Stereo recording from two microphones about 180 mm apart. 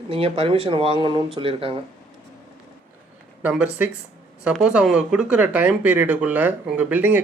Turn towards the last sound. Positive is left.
turn(degrees=-10)  # may be behind; listen again after turning